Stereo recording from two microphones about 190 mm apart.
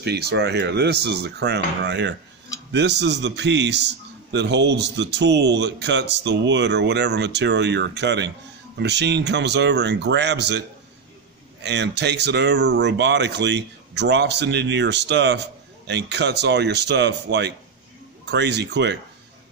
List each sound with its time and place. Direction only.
0.0 s a man's voice: 60° right (ahead or behind)
11.6 s a man's voice: 65° right (ahead or behind)